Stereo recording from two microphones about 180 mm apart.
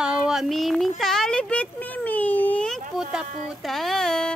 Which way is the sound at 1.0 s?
Centre (ahead or behind).